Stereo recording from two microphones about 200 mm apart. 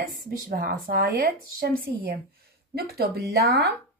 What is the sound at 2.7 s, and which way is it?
Speech, 50° right (ahead or behind).